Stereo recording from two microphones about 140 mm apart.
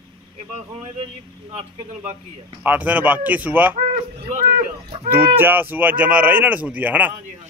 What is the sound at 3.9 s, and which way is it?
Speech, 50° right (ahead or behind).